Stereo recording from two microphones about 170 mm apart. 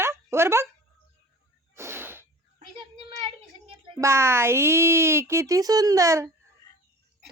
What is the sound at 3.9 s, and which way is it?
Speech, 15° right (ahead or behind).